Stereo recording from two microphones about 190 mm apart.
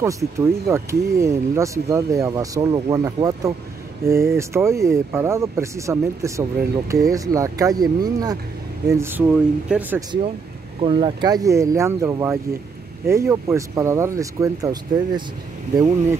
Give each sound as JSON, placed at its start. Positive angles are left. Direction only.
{"t": 0.0, "sound": "speech", "side_deg": -15}
{"t": 10.8, "sound": "speech", "side_deg": -25}